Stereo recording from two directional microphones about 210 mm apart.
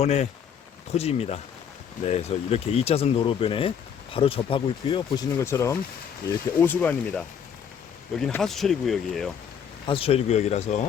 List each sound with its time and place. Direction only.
0.0 s speech: 30° left (ahead or behind); by 9.3 s centre (ahead or behind)
9.8 s speech: 25° left (ahead or behind)